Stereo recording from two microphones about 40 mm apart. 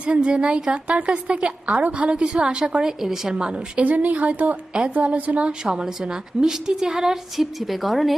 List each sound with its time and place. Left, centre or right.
0.0 s a woman's voice: right
3.0 s a woman's voice: centre
3.8 s speech: right
5.5 s a woman's voice: centre